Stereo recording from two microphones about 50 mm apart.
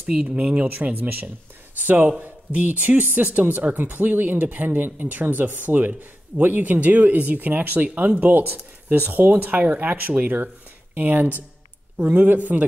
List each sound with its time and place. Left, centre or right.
0.0 s speech: right